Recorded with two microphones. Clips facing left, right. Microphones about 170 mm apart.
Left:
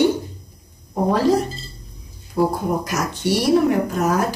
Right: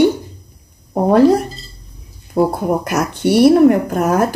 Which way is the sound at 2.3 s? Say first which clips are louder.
Right 4 dB; 60° right (ahead or behind).